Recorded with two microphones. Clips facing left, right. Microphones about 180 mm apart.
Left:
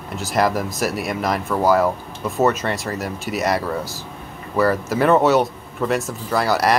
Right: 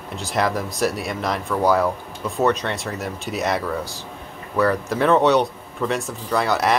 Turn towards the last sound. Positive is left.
turn(degrees=0)  # may be behind; listen again after turning